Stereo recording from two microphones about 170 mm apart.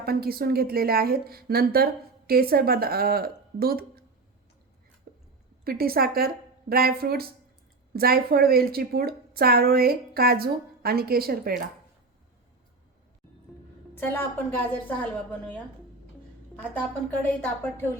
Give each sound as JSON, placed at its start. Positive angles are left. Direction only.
{"t": 0.0, "sound": "a woman's voice", "side_deg": -65}
{"t": 5.1, "sound": "a sound", "side_deg": -65}
{"t": 5.6, "sound": "a woman's voice", "side_deg": -60}
{"t": 13.9, "sound": "a woman's voice", "side_deg": 10}
{"t": 16.6, "sound": "a woman's voice", "side_deg": 10}